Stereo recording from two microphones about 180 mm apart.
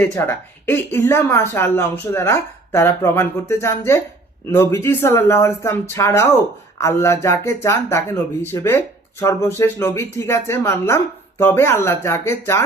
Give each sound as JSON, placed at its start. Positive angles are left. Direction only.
{"t": 0.0, "sound": "speech", "side_deg": 10}